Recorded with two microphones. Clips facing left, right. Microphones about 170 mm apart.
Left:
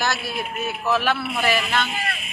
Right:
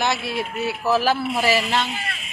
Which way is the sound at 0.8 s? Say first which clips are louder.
Right 2 dB; 35° right (ahead or behind).